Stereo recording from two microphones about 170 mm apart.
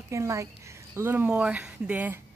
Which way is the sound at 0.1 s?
15° right (ahead or behind).